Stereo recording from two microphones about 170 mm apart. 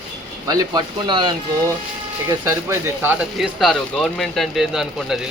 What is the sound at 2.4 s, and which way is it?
Speech, 15° right (ahead or behind).